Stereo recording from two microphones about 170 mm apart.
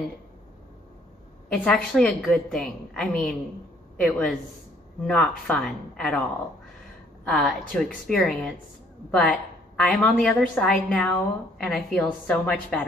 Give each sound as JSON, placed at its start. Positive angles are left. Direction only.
{"t": 1.5, "sound": "a woman's voice", "side_deg": 5}
{"t": 7.2, "sound": "a woman's voice", "side_deg": 0}